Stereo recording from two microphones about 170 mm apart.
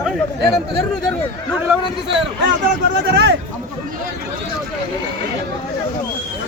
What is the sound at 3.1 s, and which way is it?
Speech, 90° right.